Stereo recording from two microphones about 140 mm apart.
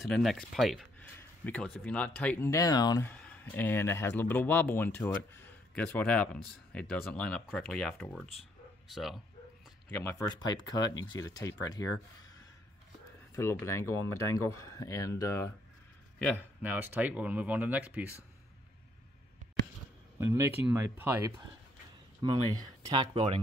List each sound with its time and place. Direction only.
0.0 s speech: centre (ahead or behind)
1.0 s speech: 10° left (ahead or behind)
2.5 s speech: 25° left (ahead or behind)
3.1 s speech: 10° left (ahead or behind)
9.8 s speech: 15° left (ahead or behind)
10.4 s speech: 30° left (ahead or behind)
13.3 s speech: 20° left (ahead or behind)
16.3 s speech: 10° right (ahead or behind)
20.2 s speech: 20° right (ahead or behind)
22.2 s speech: 30° right (ahead or behind)